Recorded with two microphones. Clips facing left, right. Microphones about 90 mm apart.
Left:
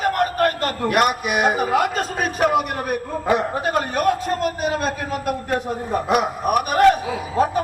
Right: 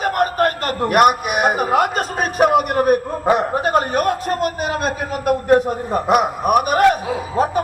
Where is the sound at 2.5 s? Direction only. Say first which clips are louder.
Right 6 dB; 55° right (ahead or behind).